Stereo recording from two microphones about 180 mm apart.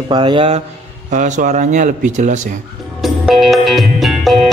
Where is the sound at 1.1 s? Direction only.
40° right (ahead or behind).